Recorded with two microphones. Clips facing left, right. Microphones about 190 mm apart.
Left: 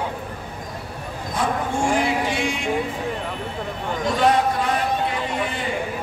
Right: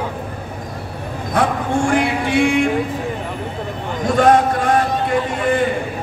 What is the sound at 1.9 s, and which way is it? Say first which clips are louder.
Music: right 4 dB; 60° right (ahead or behind).